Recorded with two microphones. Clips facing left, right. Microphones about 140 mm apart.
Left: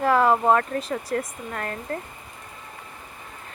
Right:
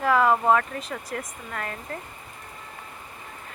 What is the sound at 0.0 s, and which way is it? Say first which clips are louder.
Speech: left 2 dB; 40° left (ahead or behind).